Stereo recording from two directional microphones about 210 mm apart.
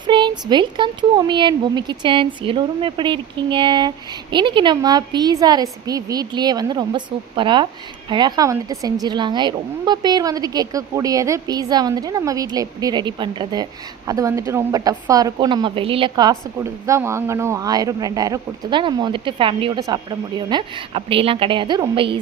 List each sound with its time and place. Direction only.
0.1 s a woman's voice: 20° right (ahead or behind)